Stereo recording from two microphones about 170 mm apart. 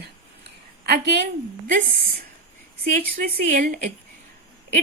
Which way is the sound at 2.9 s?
55° right (ahead or behind).